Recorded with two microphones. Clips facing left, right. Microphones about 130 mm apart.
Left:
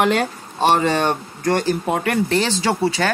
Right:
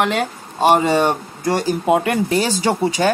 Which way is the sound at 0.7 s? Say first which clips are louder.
Right 3 dB; 10° right (ahead or behind).